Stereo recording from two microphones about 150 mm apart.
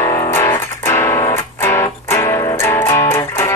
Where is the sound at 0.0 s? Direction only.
20° left (ahead or behind).